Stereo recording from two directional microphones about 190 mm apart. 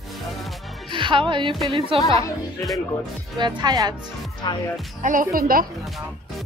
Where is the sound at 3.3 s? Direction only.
20° right (ahead or behind).